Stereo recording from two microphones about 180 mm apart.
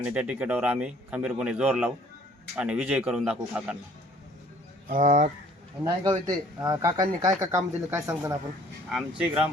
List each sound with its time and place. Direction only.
0.0 s a man's voice: 5° right (ahead or behind)
4.9 s speech: 45° right (ahead or behind)
5.8 s a man's voice: 20° right (ahead or behind)
8.9 s speech: centre (ahead or behind)